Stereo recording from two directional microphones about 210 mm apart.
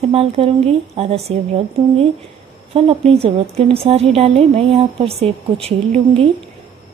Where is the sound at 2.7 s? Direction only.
25° right (ahead or behind).